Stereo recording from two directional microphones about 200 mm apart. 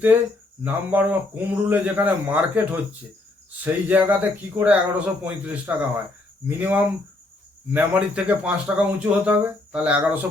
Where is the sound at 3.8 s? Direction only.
10° right (ahead or behind).